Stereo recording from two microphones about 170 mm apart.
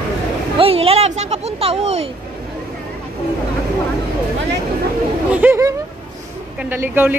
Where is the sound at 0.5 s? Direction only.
35° right (ahead or behind).